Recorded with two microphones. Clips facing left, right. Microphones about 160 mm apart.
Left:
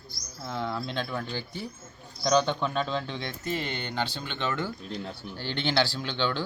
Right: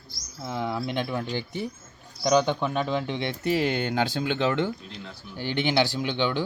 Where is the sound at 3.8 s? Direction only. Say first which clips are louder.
Right 6 dB; 50° right (ahead or behind).